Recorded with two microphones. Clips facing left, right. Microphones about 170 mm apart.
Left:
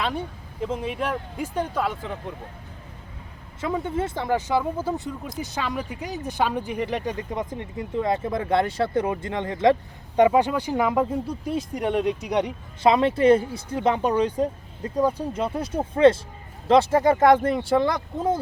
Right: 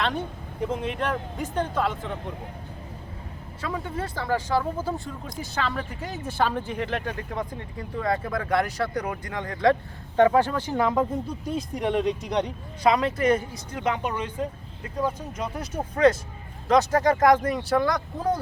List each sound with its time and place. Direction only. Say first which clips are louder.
0.0 s speech: even; 10° left (ahead or behind)
3.6 s speech: left 5 dB; 20° left (ahead or behind)
12.8 s speech: left 4 dB; 25° left (ahead or behind)